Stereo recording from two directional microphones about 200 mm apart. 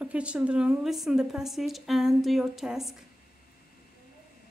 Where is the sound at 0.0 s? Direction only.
5° right (ahead or behind).